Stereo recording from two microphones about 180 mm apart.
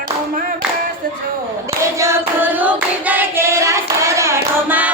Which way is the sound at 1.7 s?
15° right (ahead or behind).